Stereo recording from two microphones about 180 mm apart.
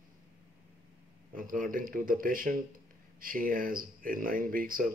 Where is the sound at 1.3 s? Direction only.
50° right (ahead or behind).